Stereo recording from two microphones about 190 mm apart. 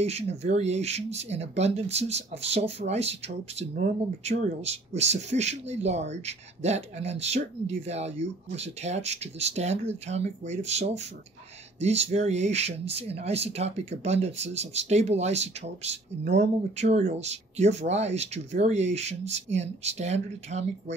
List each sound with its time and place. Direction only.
0.0 s speech: 35° right (ahead or behind)
4.2 s speech: 35° right (ahead or behind)